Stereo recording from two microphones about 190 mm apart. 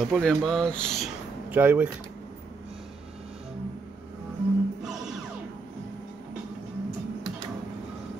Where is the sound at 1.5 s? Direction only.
10° right (ahead or behind).